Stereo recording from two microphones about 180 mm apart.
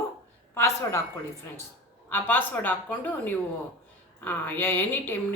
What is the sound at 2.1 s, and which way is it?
A woman's voice, 10° left (ahead or behind).